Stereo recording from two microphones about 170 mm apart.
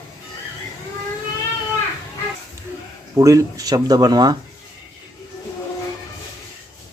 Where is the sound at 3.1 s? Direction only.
20° right (ahead or behind).